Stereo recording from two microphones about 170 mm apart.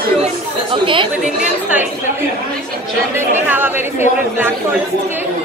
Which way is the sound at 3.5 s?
10° right (ahead or behind).